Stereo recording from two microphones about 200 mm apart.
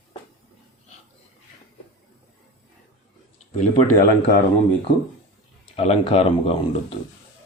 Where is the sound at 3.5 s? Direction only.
35° left (ahead or behind).